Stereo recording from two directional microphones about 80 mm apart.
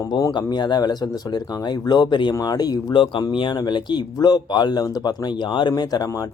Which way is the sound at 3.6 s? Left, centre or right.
Left.